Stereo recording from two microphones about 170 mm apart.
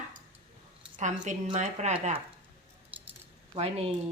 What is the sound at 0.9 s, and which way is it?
A woman's voice, 45° right (ahead or behind).